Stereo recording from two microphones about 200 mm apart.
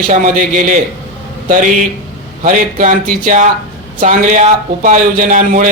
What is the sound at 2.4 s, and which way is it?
A man's voice, 40° right (ahead or behind).